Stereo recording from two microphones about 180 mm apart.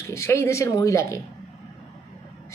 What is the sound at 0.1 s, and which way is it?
Speech, 15° left (ahead or behind).